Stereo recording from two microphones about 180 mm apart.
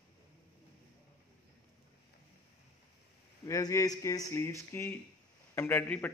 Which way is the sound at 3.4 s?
20° left (ahead or behind).